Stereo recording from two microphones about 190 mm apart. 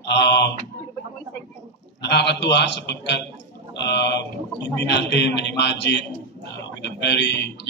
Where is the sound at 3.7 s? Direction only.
65° left (ahead or behind).